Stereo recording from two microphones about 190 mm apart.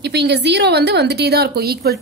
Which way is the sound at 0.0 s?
60° right (ahead or behind).